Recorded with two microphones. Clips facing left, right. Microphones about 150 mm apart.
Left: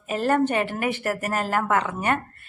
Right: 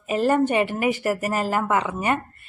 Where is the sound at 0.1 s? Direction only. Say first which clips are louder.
Right 2 dB; 5° right (ahead or behind).